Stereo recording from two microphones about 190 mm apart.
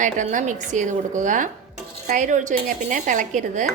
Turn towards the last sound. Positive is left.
turn(degrees=-40)  # may be behind; listen again after turning